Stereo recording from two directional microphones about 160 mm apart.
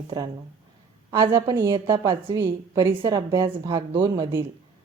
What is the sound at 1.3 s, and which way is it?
Speech, 15° right (ahead or behind).